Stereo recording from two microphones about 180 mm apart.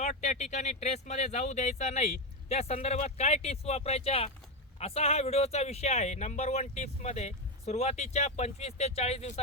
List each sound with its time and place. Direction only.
0.0 s speech: 40° left (ahead or behind)